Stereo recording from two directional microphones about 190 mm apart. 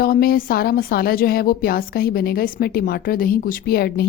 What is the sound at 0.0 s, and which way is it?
A woman's voice, 50° left (ahead or behind).